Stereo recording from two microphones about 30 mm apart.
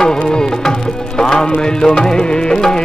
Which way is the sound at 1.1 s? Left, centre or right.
Left.